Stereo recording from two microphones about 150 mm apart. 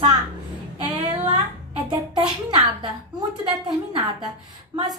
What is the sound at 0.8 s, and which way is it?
Female singing, 30° right (ahead or behind).